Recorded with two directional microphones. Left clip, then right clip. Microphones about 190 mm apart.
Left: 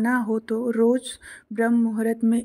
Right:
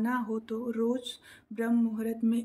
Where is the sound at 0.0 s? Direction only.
40° left (ahead or behind).